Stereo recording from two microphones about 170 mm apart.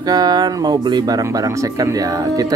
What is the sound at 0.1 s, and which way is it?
Speech, 25° right (ahead or behind).